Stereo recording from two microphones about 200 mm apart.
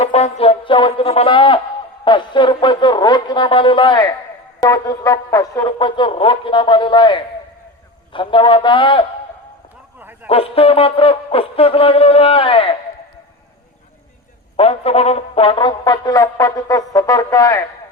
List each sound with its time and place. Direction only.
0.0 s brass instrument: 30° left (ahead or behind)
10.2 s brass instrument: 30° left (ahead or behind)
14.5 s brass instrument: 30° left (ahead or behind)